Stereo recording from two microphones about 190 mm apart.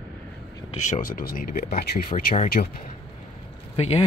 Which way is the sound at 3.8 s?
30° left (ahead or behind).